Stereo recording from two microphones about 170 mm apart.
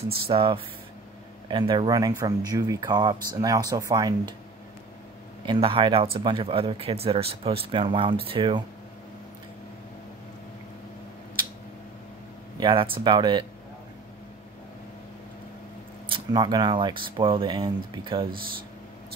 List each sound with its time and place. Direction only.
0.3 s speech: 35° right (ahead or behind)
5.4 s speech: 30° right (ahead or behind)
12.5 s speech: 30° right (ahead or behind)
16.1 s speech: 25° right (ahead or behind)